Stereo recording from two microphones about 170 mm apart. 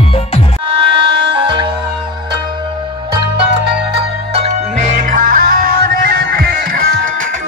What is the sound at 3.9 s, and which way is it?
Music, 35° right (ahead or behind).